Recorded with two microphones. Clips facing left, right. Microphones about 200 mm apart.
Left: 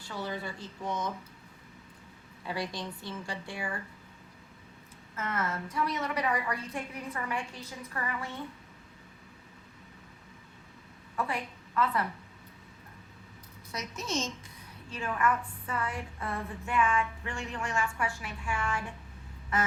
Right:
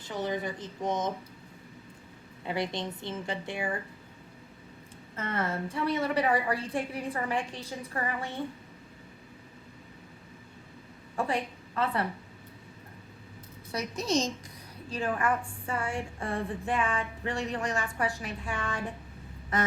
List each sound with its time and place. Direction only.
0.0 s a woman's voice: 20° right (ahead or behind)
2.5 s a woman's voice: 25° right (ahead or behind)
5.1 s a woman's voice: 30° right (ahead or behind)
11.2 s a woman's voice: 30° right (ahead or behind)
13.7 s a woman's voice: 35° right (ahead or behind)